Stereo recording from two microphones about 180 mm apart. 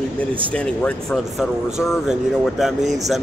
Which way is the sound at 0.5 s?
5° left (ahead or behind).